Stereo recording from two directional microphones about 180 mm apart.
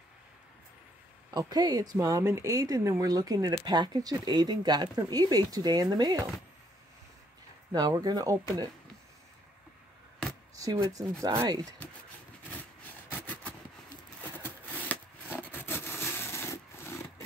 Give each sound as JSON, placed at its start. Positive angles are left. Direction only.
{"t": 1.3, "sound": "speech", "side_deg": -20}
{"t": 7.7, "sound": "speech", "side_deg": -20}
{"t": 10.5, "sound": "speech", "side_deg": -20}
{"t": 13.1, "sound": "vehicle", "side_deg": 10}
{"t": 14.4, "sound": "a sound", "side_deg": 10}